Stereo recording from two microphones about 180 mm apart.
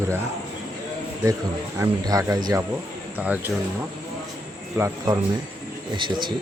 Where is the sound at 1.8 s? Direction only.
20° right (ahead or behind).